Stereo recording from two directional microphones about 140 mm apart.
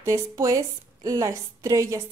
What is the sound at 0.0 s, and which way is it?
A woman's voice, 20° right (ahead or behind).